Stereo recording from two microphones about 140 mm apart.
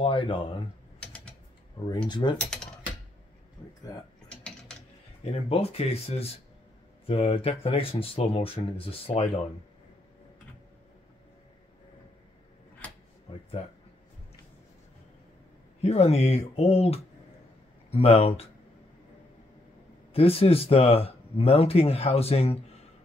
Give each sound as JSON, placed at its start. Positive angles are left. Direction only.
{"t": 0.0, "sound": "speech", "side_deg": 40}
{"t": 0.9, "sound": "typing", "side_deg": 10}
{"t": 2.0, "sound": "speech", "side_deg": 35}
{"t": 2.4, "sound": "mechanisms", "side_deg": 5}
{"t": 4.3, "sound": "typing", "side_deg": 5}
{"t": 5.3, "sound": "speech", "side_deg": 45}
{"t": 15.8, "sound": "speech", "side_deg": 50}
{"t": 20.1, "sound": "speech", "side_deg": 45}